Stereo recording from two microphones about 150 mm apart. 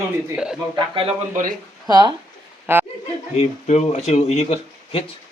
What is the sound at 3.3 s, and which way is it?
Speech, 45° left (ahead or behind).